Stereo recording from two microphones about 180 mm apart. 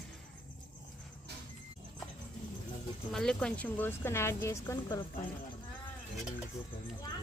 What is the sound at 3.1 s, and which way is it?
A woman's voice, 5° left (ahead or behind).